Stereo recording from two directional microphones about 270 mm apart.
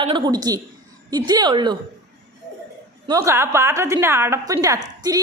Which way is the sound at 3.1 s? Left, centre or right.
Centre.